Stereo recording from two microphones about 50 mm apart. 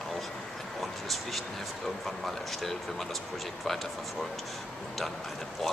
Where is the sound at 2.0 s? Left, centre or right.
Centre.